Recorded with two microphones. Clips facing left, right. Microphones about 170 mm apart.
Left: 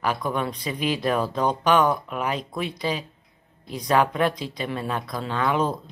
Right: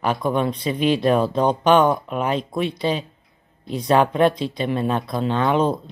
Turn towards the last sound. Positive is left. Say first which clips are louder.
# right 5 dB
turn(degrees=-25)  # may be behind; listen again after turning